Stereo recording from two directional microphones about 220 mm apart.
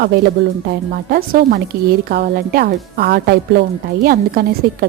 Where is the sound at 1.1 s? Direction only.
40° right (ahead or behind).